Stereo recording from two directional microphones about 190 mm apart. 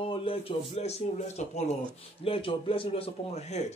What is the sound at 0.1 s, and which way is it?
A man's voice, 30° left (ahead or behind).